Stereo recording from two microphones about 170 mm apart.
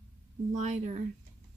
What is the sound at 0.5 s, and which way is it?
Speech, 45° right (ahead or behind).